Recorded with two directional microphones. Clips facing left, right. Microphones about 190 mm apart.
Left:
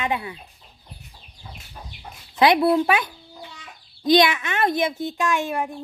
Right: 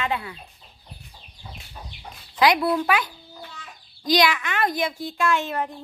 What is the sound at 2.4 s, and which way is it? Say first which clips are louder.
Speech: left 3 dB; 25° left (ahead or behind).